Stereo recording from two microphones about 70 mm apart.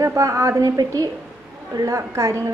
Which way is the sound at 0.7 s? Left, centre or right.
Right.